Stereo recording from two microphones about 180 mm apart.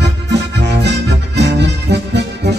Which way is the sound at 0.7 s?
70° right (ahead or behind).